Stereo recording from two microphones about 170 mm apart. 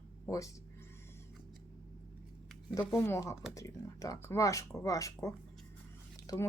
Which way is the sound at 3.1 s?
15° left (ahead or behind).